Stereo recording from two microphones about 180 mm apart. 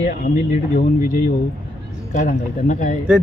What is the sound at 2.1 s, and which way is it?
Speech, 45° left (ahead or behind).